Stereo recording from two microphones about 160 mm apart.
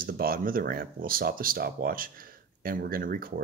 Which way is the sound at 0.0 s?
65° right (ahead or behind).